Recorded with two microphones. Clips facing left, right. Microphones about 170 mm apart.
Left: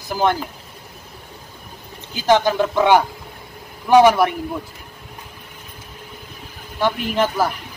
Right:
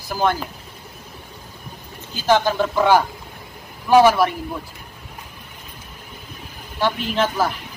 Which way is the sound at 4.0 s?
15° left (ahead or behind).